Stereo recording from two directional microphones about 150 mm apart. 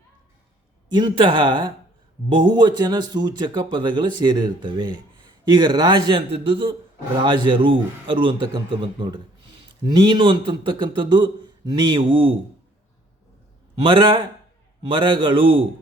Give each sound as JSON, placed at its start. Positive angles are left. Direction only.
{"t": 0.9, "sound": "a man's voice", "side_deg": -30}
{"t": 13.8, "sound": "a man's voice", "side_deg": -30}